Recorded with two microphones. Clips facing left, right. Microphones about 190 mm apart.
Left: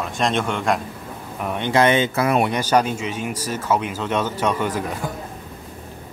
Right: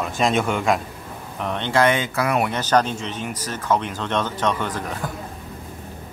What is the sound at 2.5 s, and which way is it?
Speech, 10° left (ahead or behind).